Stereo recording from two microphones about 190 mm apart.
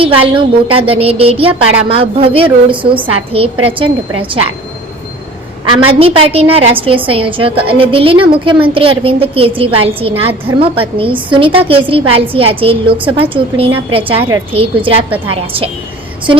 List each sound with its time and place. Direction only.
0.0 s speech: 30° right (ahead or behind)
6.0 s speech: 30° right (ahead or behind)